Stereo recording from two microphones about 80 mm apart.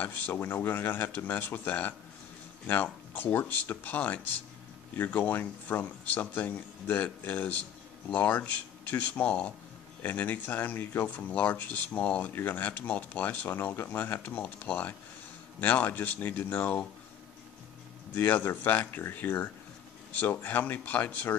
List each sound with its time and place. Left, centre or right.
0.0 s speech: left
18.1 s speech: left